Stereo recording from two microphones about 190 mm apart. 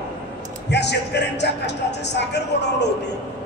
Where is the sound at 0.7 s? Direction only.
65° left (ahead or behind).